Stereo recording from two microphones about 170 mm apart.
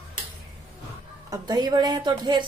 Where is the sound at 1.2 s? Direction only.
25° right (ahead or behind).